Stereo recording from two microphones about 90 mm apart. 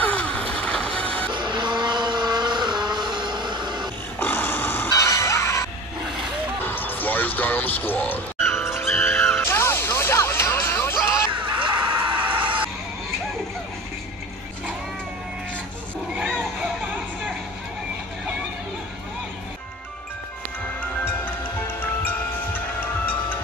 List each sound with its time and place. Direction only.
0.0 s music: 20° left (ahead or behind)
1.3 s vehicle: 60° right (ahead or behind)
4.2 s a sound: 25° left (ahead or behind)
4.9 s music: 35° left (ahead or behind)
6.6 s music: 20° left (ahead or behind)
11.4 s music: 70° right (ahead or behind)
16.3 s children playing: 10° right (ahead or behind)
16.9 s music: 15° right (ahead or behind)